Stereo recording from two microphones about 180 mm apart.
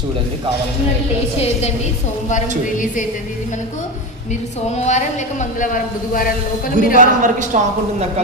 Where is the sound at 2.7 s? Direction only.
45° left (ahead or behind).